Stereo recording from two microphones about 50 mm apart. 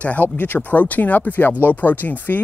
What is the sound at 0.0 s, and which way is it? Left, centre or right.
Speech, left.